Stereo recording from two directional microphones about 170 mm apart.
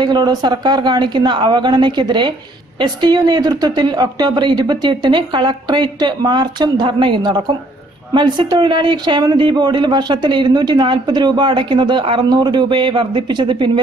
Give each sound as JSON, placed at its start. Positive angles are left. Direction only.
{"t": 0.0, "sound": "a man's voice", "side_deg": -25}